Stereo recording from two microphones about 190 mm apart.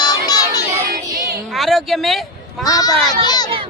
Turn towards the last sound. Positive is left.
turn(degrees=20)  # may be behind; listen again after turning